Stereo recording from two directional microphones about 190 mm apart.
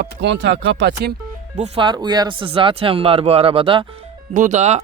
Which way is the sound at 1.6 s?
30° right (ahead or behind).